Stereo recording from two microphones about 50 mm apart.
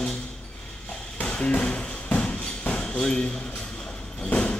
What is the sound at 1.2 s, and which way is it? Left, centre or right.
Tap, left.